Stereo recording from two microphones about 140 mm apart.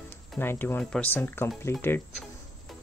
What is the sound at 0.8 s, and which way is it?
Speech, 10° left (ahead or behind).